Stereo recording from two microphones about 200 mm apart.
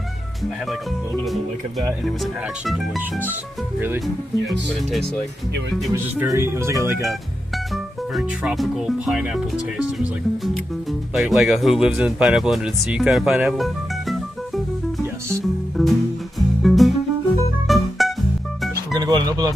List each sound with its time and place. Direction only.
2.6 s speech: centre (ahead or behind)
4.5 s speech: centre (ahead or behind)
5.9 s speech: 10° right (ahead or behind)
7.0 s speech: centre (ahead or behind)
15.8 s music: centre (ahead or behind)
18.9 s music: 20° right (ahead or behind)